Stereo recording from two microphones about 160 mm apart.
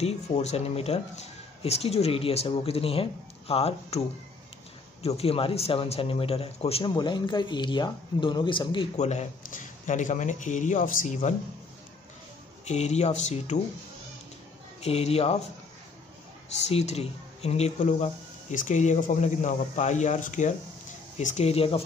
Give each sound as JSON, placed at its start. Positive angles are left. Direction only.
{"t": 0.0, "sound": "speech", "side_deg": 40}
{"t": 5.0, "sound": "speech", "side_deg": 40}
{"t": 8.9, "sound": "speech", "side_deg": 45}
{"t": 12.6, "sound": "speech", "side_deg": 45}
{"t": 14.8, "sound": "speech", "side_deg": 40}
{"t": 16.5, "sound": "speech", "side_deg": 45}